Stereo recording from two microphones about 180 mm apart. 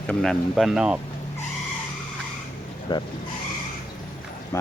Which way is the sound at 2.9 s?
25° left (ahead or behind).